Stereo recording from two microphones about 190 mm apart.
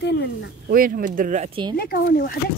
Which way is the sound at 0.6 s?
50° right (ahead or behind).